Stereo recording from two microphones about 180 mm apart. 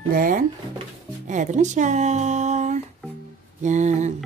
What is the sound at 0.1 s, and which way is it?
Speech, 50° right (ahead or behind).